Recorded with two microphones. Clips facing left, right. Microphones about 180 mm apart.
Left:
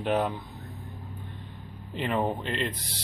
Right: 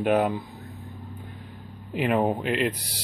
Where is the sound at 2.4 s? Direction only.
5° right (ahead or behind).